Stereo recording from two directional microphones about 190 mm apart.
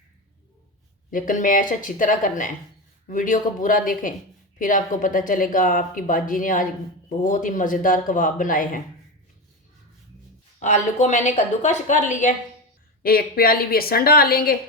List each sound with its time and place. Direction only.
1.1 s speech: 45° left (ahead or behind)
10.6 s a woman's voice: 40° left (ahead or behind)
13.0 s speech: 50° left (ahead or behind)